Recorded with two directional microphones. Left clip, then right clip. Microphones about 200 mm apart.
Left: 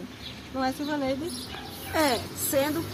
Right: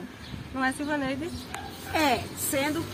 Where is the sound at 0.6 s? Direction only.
5° right (ahead or behind).